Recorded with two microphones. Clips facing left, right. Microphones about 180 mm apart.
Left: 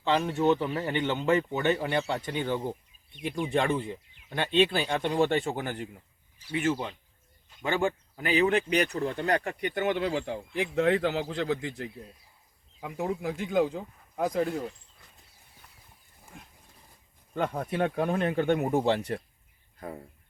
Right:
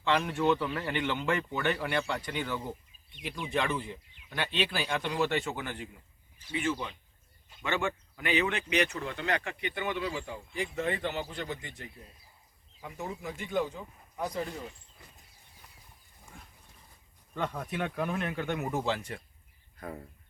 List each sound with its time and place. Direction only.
0.0 s a man's voice: 25° left (ahead or behind); by 11.7 s 90° left
12.8 s speech: 65° left (ahead or behind)
17.5 s speech: 35° left (ahead or behind)